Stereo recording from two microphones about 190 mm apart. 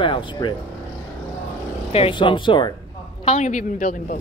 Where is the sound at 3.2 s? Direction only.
40° left (ahead or behind).